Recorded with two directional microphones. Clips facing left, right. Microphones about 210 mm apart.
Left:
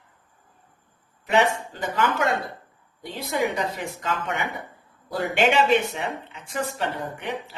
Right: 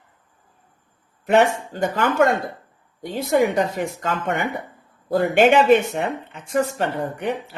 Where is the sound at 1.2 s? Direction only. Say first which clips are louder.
Right 5 dB; 50° right (ahead or behind).